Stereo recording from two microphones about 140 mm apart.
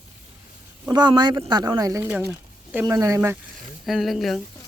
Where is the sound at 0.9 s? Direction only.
30° right (ahead or behind).